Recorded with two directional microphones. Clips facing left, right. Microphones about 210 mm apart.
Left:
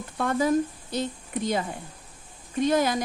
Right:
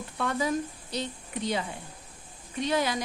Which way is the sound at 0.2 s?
50° left (ahead or behind).